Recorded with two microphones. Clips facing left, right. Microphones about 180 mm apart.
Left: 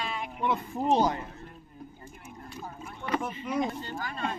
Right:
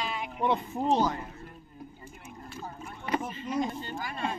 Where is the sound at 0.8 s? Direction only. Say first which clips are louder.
Left 1 dB; 15° left (ahead or behind).